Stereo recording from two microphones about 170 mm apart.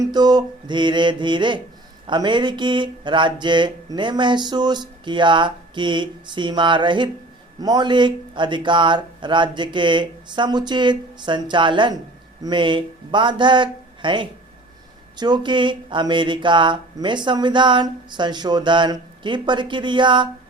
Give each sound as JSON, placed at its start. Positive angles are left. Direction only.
{"t": 0.0, "sound": "speech", "side_deg": -25}